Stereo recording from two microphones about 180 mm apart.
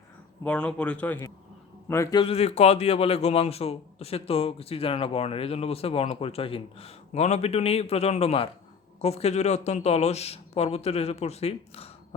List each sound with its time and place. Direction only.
0.4 s a man's voice: 5° left (ahead or behind); by 11.9 s 35° left (ahead or behind)